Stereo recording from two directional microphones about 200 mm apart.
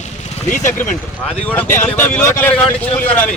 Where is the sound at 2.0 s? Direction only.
10° left (ahead or behind).